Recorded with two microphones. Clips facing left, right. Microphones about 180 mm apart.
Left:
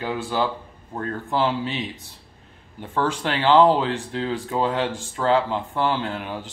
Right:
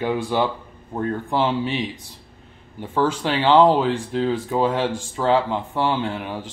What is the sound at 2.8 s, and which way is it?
Speech, 10° right (ahead or behind).